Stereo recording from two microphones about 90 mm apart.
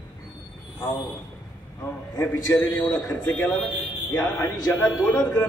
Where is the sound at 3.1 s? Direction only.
20° left (ahead or behind).